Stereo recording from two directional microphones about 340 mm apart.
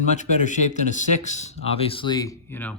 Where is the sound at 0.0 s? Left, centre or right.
Left.